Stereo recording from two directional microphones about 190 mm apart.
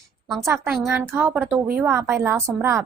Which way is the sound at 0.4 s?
15° right (ahead or behind).